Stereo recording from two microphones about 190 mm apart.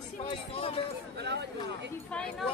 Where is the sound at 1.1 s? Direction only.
60° right (ahead or behind).